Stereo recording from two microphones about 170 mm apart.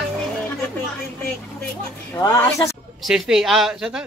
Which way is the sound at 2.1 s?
15° left (ahead or behind).